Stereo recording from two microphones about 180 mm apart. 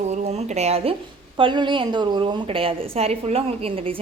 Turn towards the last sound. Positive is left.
turn(degrees=-35)  # may be behind; listen again after turning